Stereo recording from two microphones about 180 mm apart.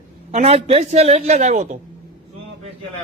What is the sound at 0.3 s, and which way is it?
A man's voice, 35° right (ahead or behind).